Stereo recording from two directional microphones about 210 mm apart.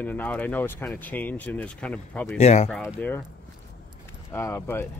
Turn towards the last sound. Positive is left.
turn(degrees=10)  # may be behind; listen again after turning